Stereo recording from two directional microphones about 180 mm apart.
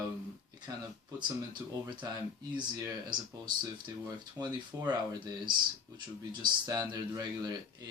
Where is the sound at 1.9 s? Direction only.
25° right (ahead or behind).